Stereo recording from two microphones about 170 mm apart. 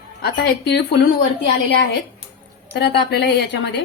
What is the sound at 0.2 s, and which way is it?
Speech, 80° left.